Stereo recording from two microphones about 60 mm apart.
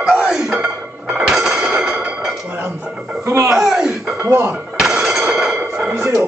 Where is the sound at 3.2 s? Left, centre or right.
Right.